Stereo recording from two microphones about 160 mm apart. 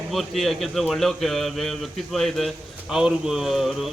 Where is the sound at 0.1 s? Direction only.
Centre (ahead or behind).